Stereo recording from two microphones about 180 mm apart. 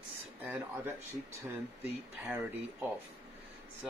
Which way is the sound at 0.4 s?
10° right (ahead or behind).